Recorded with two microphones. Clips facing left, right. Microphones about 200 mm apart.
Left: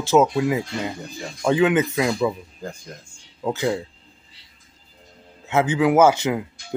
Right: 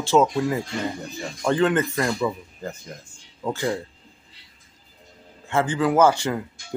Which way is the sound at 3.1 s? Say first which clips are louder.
Left 3 dB; 10° left (ahead or behind).